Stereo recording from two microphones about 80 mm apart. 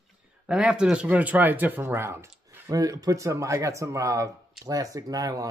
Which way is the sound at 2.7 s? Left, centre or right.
Right.